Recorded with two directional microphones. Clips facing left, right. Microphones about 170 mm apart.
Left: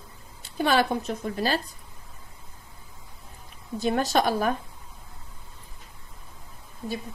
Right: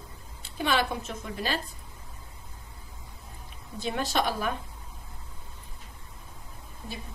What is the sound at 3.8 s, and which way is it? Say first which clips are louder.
Speech: left 5 dB; 45° left (ahead or behind).